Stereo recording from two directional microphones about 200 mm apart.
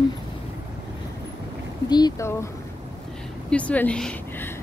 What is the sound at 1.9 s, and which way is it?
Speech, 20° left (ahead or behind).